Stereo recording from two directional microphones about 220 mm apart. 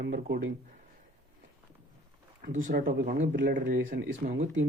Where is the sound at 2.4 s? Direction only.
35° right (ahead or behind).